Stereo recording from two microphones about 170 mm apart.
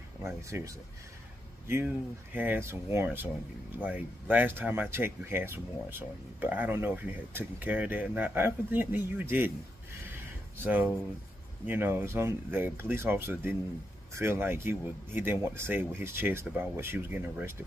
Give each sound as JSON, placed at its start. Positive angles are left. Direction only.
{"t": 0.2, "sound": "speech", "side_deg": -15}
{"t": 2.3, "sound": "speech", "side_deg": -10}
{"t": 10.6, "sound": "speech", "side_deg": -10}